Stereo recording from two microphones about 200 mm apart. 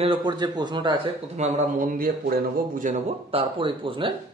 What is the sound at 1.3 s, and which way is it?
Speech, 35° right (ahead or behind).